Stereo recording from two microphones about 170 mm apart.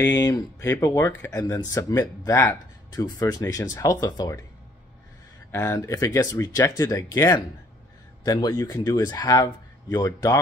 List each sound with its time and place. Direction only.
0.1 s speech: 20° left (ahead or behind)
5.5 s speech: 15° left (ahead or behind)